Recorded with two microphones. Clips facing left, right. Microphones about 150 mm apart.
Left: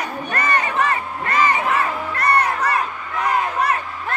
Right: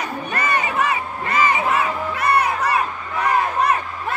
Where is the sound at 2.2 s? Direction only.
5° right (ahead or behind).